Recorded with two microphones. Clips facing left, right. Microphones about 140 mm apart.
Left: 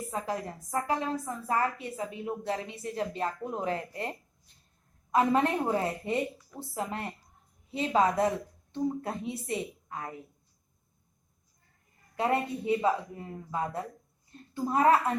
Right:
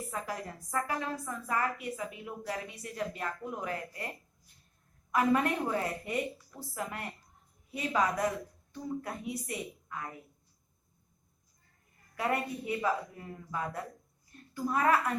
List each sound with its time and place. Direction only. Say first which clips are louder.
0.1 s a woman's voice: left 6 dB; 25° left (ahead or behind)
5.1 s a woman's voice: left 3 dB; 25° left (ahead or behind)
12.1 s a woman's voice: left 4 dB; 25° left (ahead or behind)